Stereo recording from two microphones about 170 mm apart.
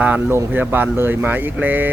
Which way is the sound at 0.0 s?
10° right (ahead or behind).